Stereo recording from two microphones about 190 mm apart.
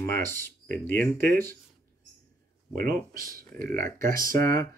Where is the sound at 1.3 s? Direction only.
50° right (ahead or behind).